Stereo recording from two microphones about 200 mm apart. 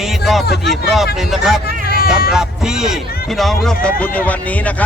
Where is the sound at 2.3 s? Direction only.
Centre (ahead or behind).